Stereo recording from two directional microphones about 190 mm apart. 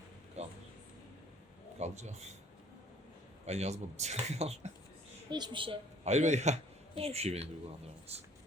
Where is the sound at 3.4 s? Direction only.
35° right (ahead or behind).